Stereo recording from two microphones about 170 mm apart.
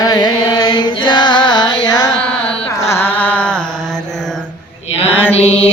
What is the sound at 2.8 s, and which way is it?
Mantra, 15° left (ahead or behind).